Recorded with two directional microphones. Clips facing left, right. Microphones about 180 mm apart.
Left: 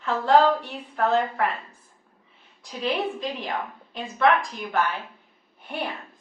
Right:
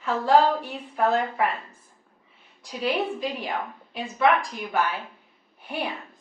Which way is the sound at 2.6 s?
Centre (ahead or behind).